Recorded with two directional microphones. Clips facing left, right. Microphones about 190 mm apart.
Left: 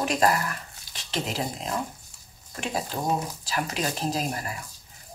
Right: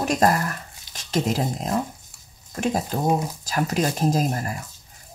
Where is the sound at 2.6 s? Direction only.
45° right (ahead or behind).